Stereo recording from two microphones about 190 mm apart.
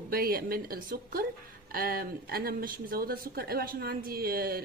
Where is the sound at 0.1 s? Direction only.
50° right (ahead or behind).